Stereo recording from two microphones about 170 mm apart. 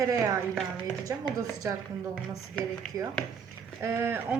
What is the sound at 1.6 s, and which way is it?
Speech, 20° right (ahead or behind).